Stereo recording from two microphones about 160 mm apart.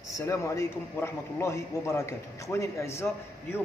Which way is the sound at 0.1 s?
20° left (ahead or behind).